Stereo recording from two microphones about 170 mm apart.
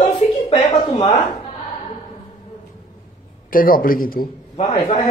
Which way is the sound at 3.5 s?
55° left (ahead or behind).